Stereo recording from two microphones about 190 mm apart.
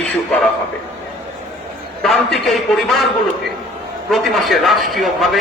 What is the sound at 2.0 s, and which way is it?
A man's voice, centre (ahead or behind).